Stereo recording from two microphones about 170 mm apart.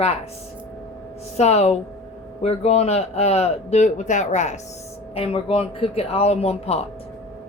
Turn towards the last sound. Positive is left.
turn(degrees=35)  # may be behind; listen again after turning